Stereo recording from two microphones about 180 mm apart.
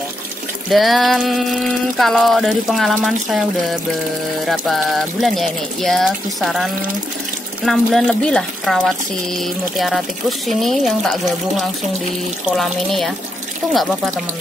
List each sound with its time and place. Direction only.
0.7 s speech: centre (ahead or behind)